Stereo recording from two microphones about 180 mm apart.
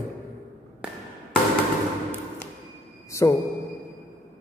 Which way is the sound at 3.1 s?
15° left (ahead or behind).